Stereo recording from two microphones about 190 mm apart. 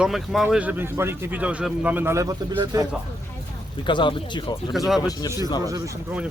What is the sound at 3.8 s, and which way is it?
Speech, 25° left (ahead or behind).